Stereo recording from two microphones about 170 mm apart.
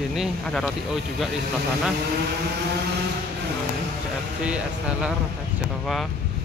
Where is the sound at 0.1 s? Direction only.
Centre (ahead or behind).